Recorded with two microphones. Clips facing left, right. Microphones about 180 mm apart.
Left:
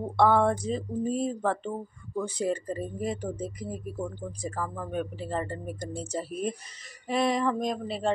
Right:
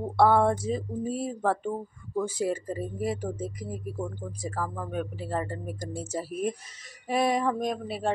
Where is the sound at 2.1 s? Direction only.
5° right (ahead or behind).